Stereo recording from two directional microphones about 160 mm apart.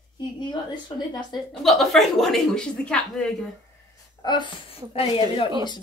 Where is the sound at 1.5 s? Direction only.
Centre (ahead or behind).